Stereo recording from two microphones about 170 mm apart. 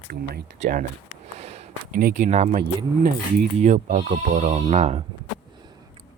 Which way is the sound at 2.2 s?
40° right (ahead or behind).